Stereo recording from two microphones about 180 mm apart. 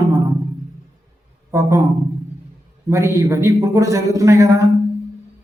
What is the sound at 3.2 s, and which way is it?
A man's voice, 15° right (ahead or behind).